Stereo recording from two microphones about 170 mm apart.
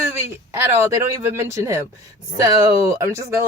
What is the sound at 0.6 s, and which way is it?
Speech, 15° right (ahead or behind).